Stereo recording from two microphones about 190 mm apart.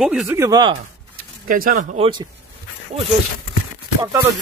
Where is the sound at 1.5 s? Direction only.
50° right (ahead or behind).